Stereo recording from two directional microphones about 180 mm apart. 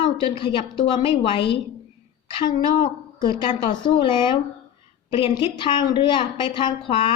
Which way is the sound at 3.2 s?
25° left (ahead or behind).